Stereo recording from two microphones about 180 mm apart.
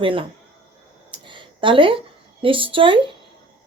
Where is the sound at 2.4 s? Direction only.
30° right (ahead or behind).